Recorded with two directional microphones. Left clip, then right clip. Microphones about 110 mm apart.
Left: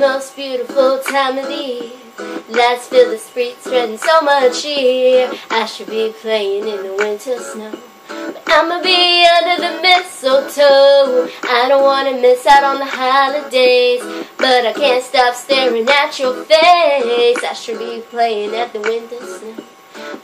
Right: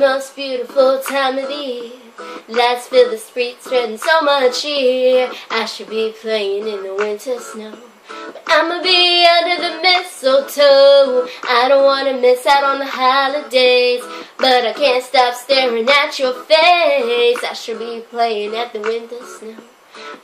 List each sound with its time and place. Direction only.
0.0 s female singing: 30° right (ahead or behind)
1.1 s child singing: 30° right (ahead or behind)
2.6 s child singing: 30° right (ahead or behind)
6.6 s music: 15° left (ahead or behind)
7.3 s child singing: 30° right (ahead or behind)
10.2 s female singing: 30° right (ahead or behind)
11.2 s child singing: 30° right (ahead or behind)
15.9 s female singing: 30° right (ahead or behind)
17.4 s child singing: 25° right (ahead or behind)